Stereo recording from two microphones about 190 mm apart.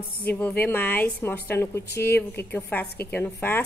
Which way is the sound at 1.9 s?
60° left (ahead or behind).